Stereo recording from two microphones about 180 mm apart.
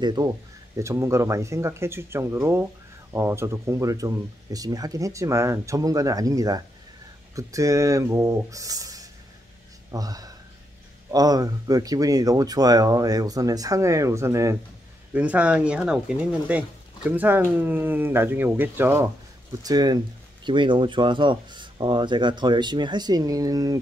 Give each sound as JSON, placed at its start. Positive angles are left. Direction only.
{"t": 0.0, "sound": "speech", "side_deg": -25}